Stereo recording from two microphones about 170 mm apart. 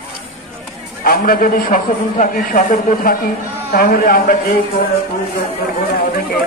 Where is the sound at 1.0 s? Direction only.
60° left (ahead or behind).